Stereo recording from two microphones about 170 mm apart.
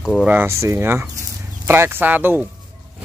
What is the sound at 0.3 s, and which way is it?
Speech, 15° right (ahead or behind).